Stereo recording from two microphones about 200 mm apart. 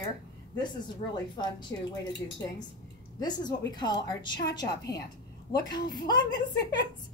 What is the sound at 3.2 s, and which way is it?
A woman's voice, 20° left (ahead or behind).